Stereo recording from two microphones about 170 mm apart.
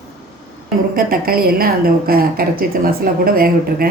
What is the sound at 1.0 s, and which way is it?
Speech, 60° right (ahead or behind).